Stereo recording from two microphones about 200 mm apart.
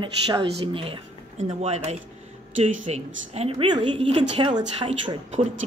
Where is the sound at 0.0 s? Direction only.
25° right (ahead or behind).